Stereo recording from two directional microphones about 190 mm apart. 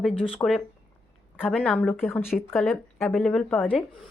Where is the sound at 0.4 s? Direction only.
15° left (ahead or behind).